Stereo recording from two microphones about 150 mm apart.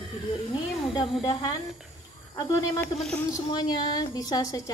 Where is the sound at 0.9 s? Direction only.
30° left (ahead or behind).